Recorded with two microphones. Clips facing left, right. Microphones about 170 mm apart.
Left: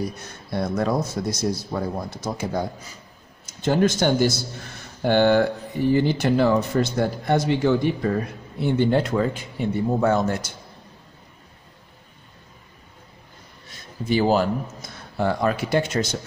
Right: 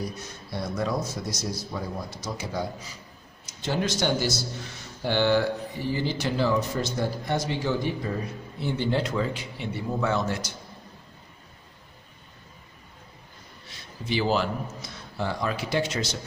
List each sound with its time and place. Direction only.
0.5 s speech: 55° left (ahead or behind)
13.7 s a man's voice: 45° left (ahead or behind)